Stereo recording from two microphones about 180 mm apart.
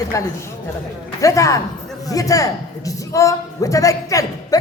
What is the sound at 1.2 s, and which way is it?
A man's voice, 20° left (ahead or behind).